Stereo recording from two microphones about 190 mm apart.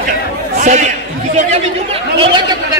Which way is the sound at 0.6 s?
40° right (ahead or behind).